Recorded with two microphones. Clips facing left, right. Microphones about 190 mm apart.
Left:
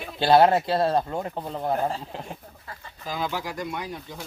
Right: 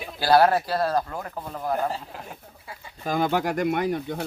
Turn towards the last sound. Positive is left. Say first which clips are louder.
# right 9 dB
turn(degrees=-60)  # may be behind; listen again after turning